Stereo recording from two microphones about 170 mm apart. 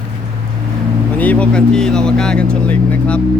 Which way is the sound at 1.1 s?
10° left (ahead or behind).